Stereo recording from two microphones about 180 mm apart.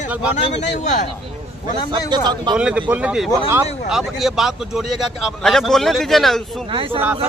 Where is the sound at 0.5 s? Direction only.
40° left (ahead or behind).